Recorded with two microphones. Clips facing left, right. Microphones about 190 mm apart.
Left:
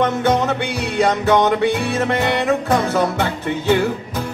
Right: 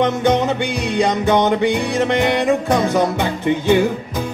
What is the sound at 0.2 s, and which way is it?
Music, 15° right (ahead or behind).